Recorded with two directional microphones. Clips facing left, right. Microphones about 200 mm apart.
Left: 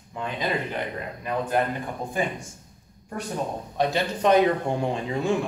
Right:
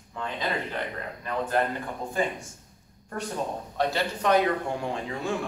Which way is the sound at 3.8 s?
20° left (ahead or behind).